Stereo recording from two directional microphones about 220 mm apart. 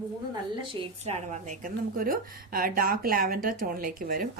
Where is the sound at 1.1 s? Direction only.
30° right (ahead or behind).